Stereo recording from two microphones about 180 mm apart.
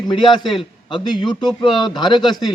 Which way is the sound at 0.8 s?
25° left (ahead or behind).